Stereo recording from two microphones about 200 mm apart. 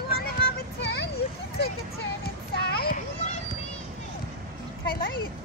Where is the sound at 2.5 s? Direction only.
50° left (ahead or behind).